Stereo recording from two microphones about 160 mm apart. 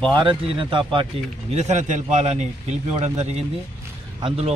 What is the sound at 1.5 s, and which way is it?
A man's voice, 45° right (ahead or behind).